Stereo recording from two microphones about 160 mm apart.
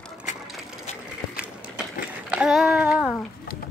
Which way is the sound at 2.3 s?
5° right (ahead or behind).